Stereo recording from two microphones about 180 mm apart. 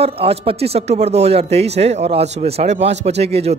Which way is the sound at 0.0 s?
30° right (ahead or behind).